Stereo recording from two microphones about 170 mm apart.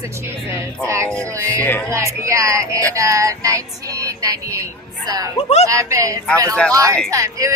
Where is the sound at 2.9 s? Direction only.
15° right (ahead or behind).